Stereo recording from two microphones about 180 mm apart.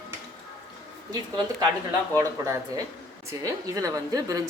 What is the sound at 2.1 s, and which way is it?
A woman's voice, 20° right (ahead or behind).